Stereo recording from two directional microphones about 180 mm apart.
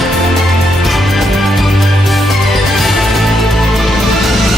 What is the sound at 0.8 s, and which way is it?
Music, centre (ahead or behind).